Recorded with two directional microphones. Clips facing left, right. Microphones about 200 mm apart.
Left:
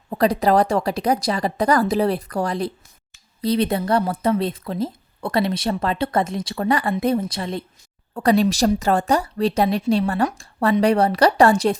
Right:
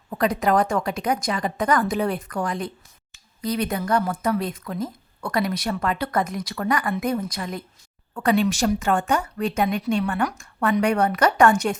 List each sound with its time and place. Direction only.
0.1 s a woman's voice: 35° left (ahead or behind)